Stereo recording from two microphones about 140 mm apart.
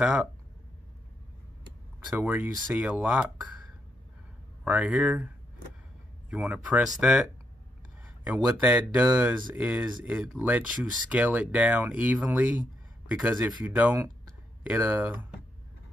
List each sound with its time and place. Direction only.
0.0 s speech: 5° right (ahead or behind)
2.0 s speech: 15° right (ahead or behind)
4.6 s speech: 10° right (ahead or behind)
6.3 s speech: 10° right (ahead or behind)
8.0 s a sound: 10° right (ahead or behind)
8.5 s speech: 10° right (ahead or behind)